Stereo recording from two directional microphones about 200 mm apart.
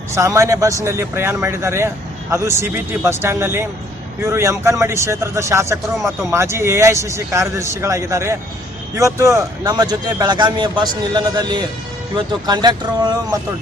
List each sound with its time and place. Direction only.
0.1 s a man's voice: 15° right (ahead or behind)